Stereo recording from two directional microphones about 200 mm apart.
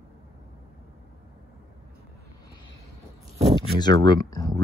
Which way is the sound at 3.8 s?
20° left (ahead or behind).